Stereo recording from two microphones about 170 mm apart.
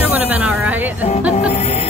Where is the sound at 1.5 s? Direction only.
40° left (ahead or behind).